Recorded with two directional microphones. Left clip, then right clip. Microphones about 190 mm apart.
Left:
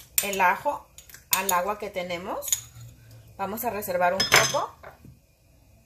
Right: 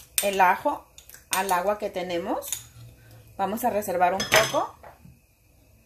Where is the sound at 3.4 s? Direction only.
55° right (ahead or behind).